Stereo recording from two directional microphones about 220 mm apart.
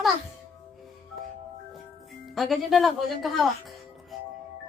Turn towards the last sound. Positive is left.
turn(degrees=0)  # may be behind; listen again after turning